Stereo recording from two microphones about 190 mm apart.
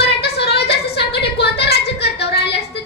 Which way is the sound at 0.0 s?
60° left (ahead or behind).